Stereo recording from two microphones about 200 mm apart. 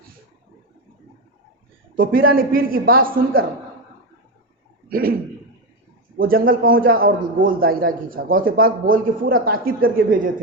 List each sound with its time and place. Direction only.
2.0 s a man's voice: 45° right (ahead or behind)
4.9 s speech: 45° right (ahead or behind)
6.1 s a man's voice: 45° right (ahead or behind)